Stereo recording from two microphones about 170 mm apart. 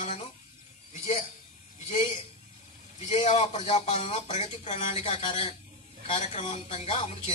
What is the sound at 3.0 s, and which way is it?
Speech, 40° left (ahead or behind).